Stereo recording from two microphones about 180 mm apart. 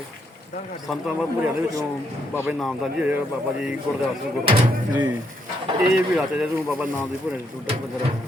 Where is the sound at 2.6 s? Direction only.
Centre (ahead or behind).